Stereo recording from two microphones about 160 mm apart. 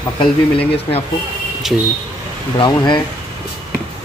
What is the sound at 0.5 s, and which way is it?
Speech, 35° left (ahead or behind).